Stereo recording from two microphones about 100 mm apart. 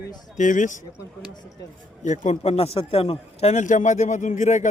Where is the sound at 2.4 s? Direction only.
90° left.